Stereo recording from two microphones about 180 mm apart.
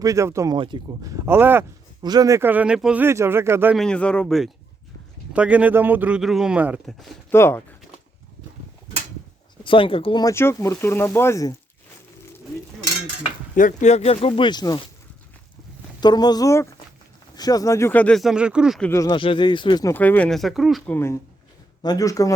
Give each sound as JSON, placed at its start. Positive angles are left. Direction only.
{"t": 0.0, "sound": "speech", "side_deg": -15}
{"t": 2.0, "sound": "speech", "side_deg": -20}
{"t": 3.8, "sound": "speech", "side_deg": 5}
{"t": 7.3, "sound": "speech", "side_deg": 15}
{"t": 9.6, "sound": "speech", "side_deg": 30}
{"t": 13.6, "sound": "speech", "side_deg": 45}
{"t": 16.0, "sound": "speech", "side_deg": 25}
{"t": 18.8, "sound": "speech", "side_deg": 10}
{"t": 19.0, "sound": "speech", "side_deg": 25}
{"t": 19.9, "sound": "speech", "side_deg": 10}
{"t": 20.9, "sound": "speech", "side_deg": 15}